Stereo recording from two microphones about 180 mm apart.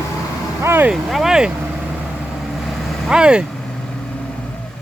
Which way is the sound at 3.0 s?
5° right (ahead or behind).